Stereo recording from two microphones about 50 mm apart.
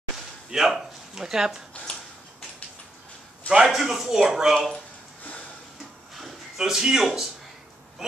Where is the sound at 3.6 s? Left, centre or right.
Centre.